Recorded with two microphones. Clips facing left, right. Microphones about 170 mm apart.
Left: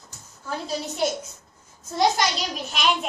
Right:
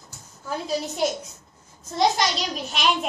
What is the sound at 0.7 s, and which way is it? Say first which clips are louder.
A child's voice: right 1 dB; centre (ahead or behind).